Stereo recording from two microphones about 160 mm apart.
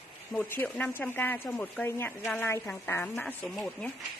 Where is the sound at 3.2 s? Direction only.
Centre (ahead or behind).